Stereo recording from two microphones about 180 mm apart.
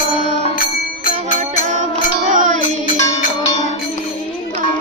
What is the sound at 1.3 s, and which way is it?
Music, 45° right (ahead or behind).